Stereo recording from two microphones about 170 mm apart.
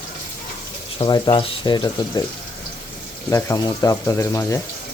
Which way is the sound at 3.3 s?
15° left (ahead or behind).